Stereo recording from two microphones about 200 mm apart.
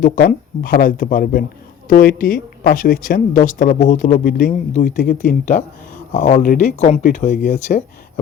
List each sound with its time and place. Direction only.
0.0 s speech: 45° left (ahead or behind)